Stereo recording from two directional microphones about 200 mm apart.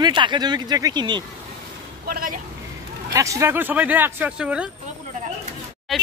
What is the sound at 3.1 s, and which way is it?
Speech, 15° right (ahead or behind).